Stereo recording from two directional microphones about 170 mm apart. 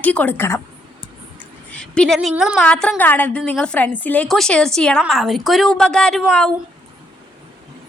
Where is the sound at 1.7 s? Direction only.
5° left (ahead or behind).